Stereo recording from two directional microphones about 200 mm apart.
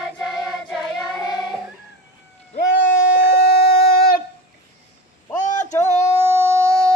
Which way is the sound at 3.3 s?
55° left (ahead or behind).